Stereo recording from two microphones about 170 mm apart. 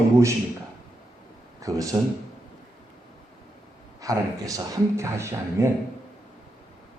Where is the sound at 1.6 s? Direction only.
20° right (ahead or behind).